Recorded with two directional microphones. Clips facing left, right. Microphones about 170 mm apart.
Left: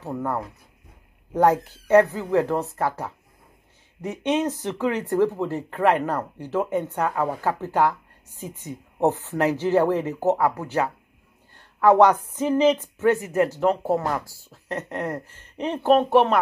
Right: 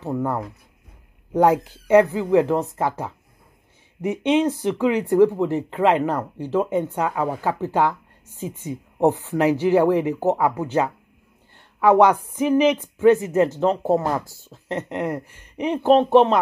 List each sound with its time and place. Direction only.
0.0 s speech: 15° right (ahead or behind)